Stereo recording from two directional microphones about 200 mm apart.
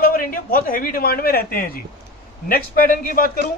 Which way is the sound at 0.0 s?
45° left (ahead or behind).